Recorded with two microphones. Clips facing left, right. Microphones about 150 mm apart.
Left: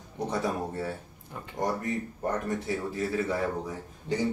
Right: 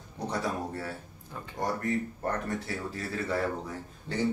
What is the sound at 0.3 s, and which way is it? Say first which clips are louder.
Speech: left 2 dB; 20° left (ahead or behind).